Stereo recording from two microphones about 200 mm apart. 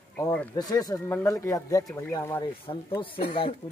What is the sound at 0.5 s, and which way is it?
Speech, 20° left (ahead or behind).